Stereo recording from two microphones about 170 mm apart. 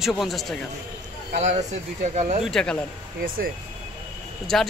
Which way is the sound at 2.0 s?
40° right (ahead or behind).